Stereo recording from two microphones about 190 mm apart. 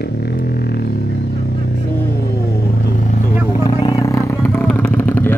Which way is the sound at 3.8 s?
15° left (ahead or behind).